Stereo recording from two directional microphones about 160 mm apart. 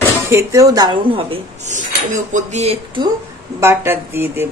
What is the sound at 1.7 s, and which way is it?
Speech, 50° right (ahead or behind).